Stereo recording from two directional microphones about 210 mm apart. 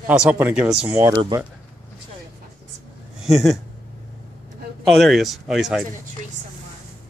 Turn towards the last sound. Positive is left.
turn(degrees=0)  # may be behind; listen again after turning